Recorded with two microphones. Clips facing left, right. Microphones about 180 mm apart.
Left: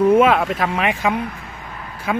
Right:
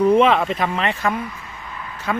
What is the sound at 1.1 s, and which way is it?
Speech, 70° left (ahead or behind).